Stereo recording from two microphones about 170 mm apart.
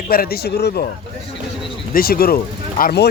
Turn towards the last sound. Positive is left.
turn(degrees=70)  # may be behind; listen again after turning